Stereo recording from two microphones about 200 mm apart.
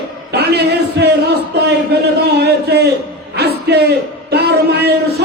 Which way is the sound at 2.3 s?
55° right (ahead or behind).